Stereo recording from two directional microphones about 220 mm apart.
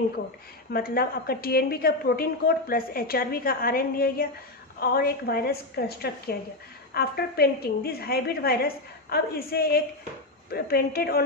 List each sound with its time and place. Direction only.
0.7 s a woman's voice: 45° left (ahead or behind)